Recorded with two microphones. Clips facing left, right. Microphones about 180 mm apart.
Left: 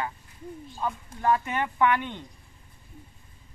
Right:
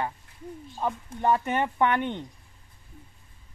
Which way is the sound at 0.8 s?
25° right (ahead or behind).